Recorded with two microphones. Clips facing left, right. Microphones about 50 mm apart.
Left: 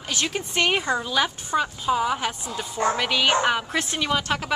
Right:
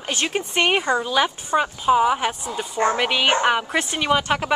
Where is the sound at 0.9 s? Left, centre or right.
Centre.